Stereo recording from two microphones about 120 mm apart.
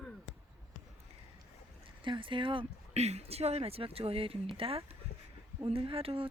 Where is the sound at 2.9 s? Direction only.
65° right (ahead or behind).